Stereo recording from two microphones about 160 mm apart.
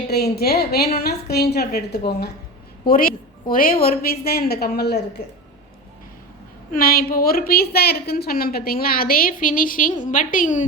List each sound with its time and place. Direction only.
0.1 s a woman's voice: 80° left
2.8 s a woman's voice: 65° left (ahead or behind); by 5.2 s 90° left
6.7 s a woman's voice: 65° left (ahead or behind)